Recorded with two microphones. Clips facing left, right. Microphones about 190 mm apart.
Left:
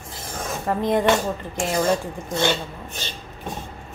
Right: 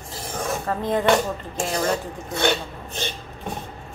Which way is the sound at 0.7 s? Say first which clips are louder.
Left 4 dB; 15° left (ahead or behind).